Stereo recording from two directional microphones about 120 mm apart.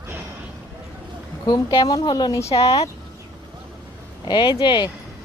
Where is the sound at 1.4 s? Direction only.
35° left (ahead or behind).